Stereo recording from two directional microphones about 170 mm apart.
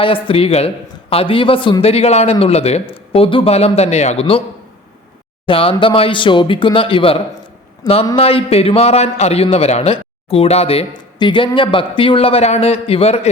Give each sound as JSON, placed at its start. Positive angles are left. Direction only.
{"t": 0.0, "sound": "a man's voice", "side_deg": 30}
{"t": 5.5, "sound": "a man's voice", "side_deg": 30}